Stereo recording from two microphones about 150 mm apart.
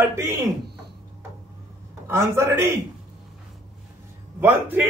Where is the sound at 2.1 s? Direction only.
15° right (ahead or behind).